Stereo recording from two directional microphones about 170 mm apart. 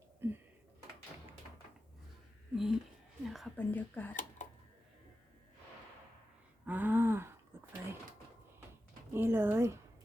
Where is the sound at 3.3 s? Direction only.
5° left (ahead or behind).